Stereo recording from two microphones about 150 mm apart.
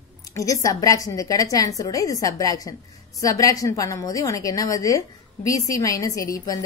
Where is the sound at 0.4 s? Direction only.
20° left (ahead or behind).